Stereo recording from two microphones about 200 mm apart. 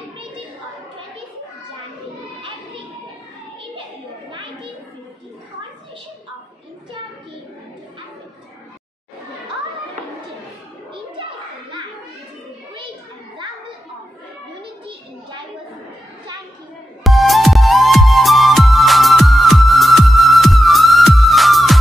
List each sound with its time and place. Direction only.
17.0 s music: centre (ahead or behind)